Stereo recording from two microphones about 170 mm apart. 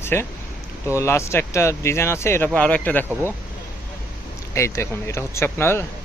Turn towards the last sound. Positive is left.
turn(degrees=15)  # may be behind; listen again after turning